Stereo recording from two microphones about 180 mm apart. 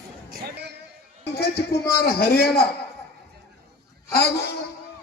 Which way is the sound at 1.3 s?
60° left (ahead or behind).